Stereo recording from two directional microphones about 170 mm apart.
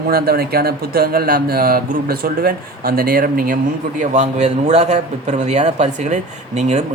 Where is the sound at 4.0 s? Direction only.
45° right (ahead or behind).